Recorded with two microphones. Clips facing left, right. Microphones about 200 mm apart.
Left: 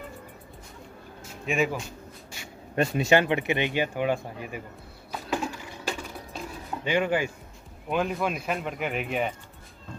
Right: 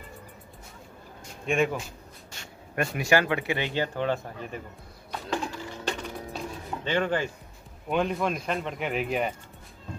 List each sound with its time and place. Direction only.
1.4 s speech: 5° left (ahead or behind)
2.7 s speech: 25° left (ahead or behind)
5.1 s a sound: 10° left (ahead or behind)
7.9 s speech: centre (ahead or behind)